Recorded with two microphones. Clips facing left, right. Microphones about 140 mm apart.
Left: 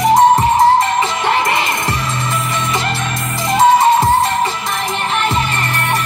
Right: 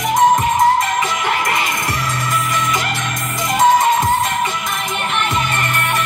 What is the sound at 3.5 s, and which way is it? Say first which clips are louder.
Music: left 3 dB; 30° left (ahead or behind).